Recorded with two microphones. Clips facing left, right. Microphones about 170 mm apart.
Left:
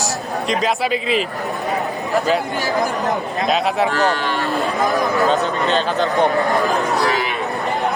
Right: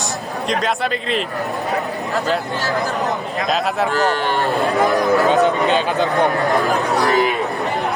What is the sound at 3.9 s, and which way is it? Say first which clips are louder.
Speech: right 1 dB; 50° right (ahead or behind).